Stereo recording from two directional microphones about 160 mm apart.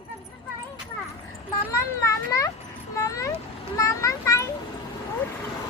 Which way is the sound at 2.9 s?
20° left (ahead or behind).